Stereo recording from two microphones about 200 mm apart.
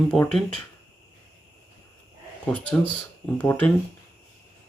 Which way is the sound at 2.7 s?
10° left (ahead or behind).